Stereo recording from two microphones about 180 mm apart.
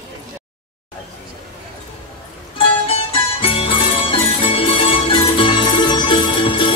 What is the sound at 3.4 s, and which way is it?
Music, 30° left (ahead or behind).